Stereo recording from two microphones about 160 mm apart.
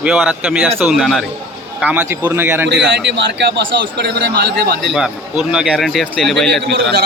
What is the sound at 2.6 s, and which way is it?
A man's voice, 90° right.